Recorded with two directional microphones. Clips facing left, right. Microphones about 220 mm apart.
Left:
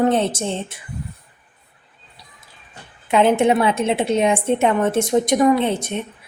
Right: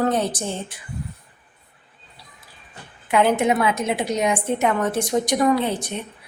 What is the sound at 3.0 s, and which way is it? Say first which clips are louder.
A woman's voice: left 3 dB; 25° left (ahead or behind).